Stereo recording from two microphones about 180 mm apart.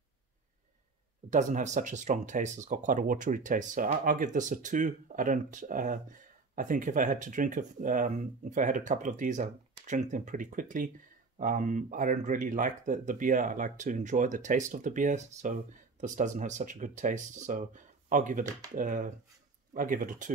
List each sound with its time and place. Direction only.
1.3 s speech: 45° right (ahead or behind)